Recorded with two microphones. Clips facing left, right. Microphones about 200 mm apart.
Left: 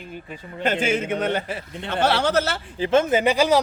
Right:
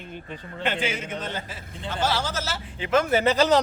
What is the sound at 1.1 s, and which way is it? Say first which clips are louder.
A man's voice: left 9 dB; 65° left (ahead or behind).